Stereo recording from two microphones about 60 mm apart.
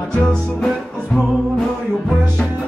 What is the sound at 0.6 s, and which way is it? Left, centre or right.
Music, centre.